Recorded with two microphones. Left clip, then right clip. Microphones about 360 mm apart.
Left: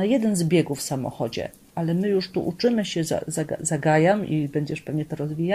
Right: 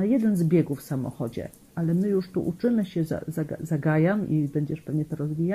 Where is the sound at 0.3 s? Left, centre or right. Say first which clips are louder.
Left 2 dB; left.